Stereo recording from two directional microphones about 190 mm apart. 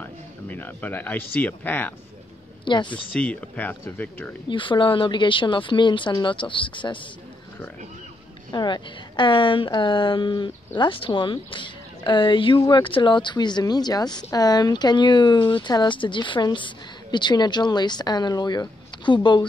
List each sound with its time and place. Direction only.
0.0 s speech: 10° left (ahead or behind)
2.6 s speech: 25° left (ahead or behind)
3.2 s speech: 10° left (ahead or behind)
4.5 s a woman's voice: 25° left (ahead or behind)
8.5 s a woman's voice: 25° left (ahead or behind)